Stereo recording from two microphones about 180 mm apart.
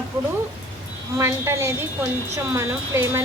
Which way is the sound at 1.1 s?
15° right (ahead or behind).